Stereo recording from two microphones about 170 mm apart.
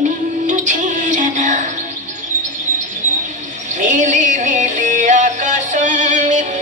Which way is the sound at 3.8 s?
45° right (ahead or behind).